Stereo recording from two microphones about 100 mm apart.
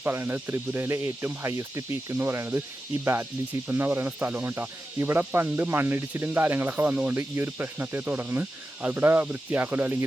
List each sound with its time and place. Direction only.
0.0 s speech: 25° right (ahead or behind)